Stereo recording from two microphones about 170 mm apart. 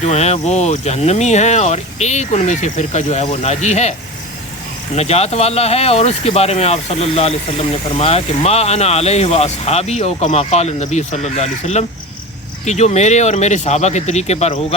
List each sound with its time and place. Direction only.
0.0 s speech: 40° left (ahead or behind)
4.9 s speech: 40° left (ahead or behind)